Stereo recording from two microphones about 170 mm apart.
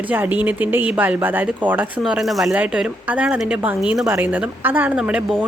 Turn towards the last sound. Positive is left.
turn(degrees=-5)  # may be behind; listen again after turning